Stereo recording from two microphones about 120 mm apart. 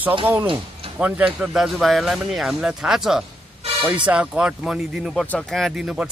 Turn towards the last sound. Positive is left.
turn(degrees=-5)  # may be behind; listen again after turning